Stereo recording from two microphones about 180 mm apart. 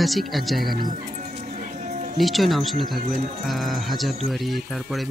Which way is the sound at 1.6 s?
40° right (ahead or behind).